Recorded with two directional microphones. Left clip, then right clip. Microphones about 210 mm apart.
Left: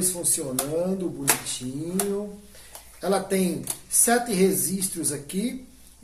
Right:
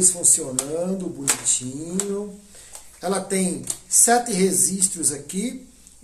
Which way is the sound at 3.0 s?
10° right (ahead or behind).